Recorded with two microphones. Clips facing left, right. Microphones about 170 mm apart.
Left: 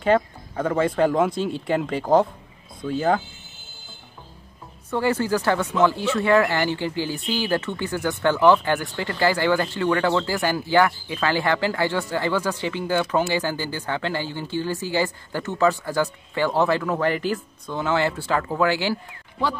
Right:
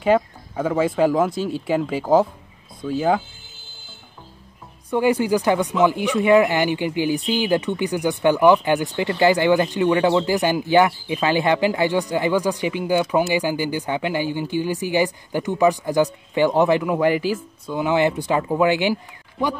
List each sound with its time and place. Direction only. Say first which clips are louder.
0.0 s speech: right 2 dB; 5° right (ahead or behind)
4.9 s speech: right 4 dB; 15° right (ahead or behind)